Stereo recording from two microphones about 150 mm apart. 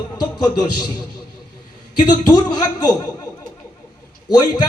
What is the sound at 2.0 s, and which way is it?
Speech, 30° left (ahead or behind).